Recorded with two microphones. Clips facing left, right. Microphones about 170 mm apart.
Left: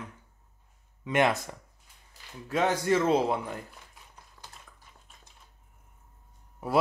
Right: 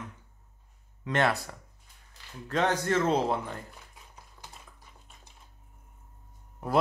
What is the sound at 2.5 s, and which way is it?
Speech, 10° left (ahead or behind).